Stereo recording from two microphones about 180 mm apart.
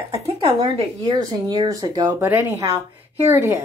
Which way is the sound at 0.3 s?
25° right (ahead or behind).